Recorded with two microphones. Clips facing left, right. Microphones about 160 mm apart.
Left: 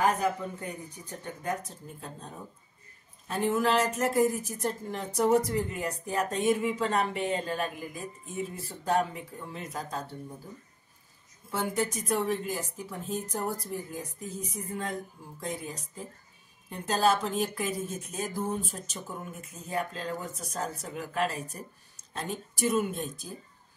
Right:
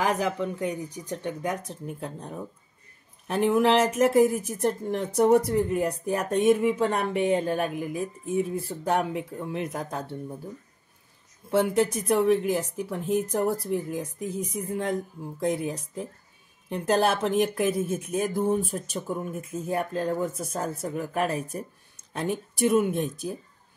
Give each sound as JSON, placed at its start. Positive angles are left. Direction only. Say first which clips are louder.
{"t": 0.0, "sound": "speech", "louder": "right 2 dB", "side_deg": -80}
{"t": 11.5, "sound": "speech", "louder": "right 8 dB", "side_deg": -65}